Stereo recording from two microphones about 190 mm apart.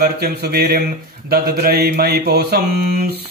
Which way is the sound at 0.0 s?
55° right (ahead or behind).